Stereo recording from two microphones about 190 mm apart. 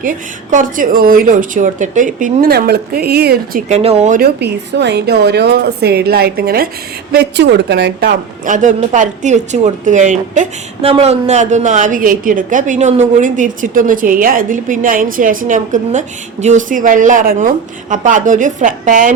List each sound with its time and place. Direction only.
0.0 s a woman's voice: 45° right (ahead or behind)
3.7 s a woman's voice: 30° right (ahead or behind)
4.2 s a woman's voice: 60° right (ahead or behind)
8.4 s a woman's voice: 40° right (ahead or behind)